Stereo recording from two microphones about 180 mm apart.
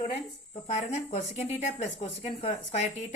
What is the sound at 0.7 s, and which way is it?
A woman's voice, 40° left (ahead or behind).